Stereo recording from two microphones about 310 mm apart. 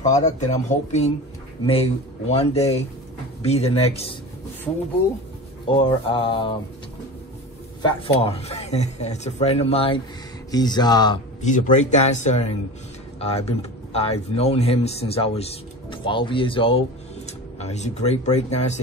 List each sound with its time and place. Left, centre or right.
0.1 s speech: left
5.7 s mantra: centre
7.8 s speech: centre